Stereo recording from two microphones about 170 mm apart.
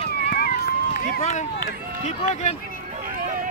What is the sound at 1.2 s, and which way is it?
Speech, 40° left (ahead or behind).